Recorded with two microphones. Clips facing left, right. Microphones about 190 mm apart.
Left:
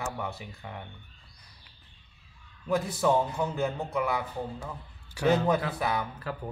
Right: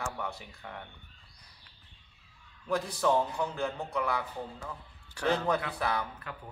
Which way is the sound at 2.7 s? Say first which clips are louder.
Left 3 dB; 5° left (ahead or behind).